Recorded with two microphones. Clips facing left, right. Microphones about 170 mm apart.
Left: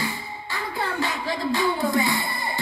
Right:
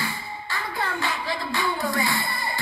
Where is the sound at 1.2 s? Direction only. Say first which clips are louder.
Left 4 dB; 40° left (ahead or behind).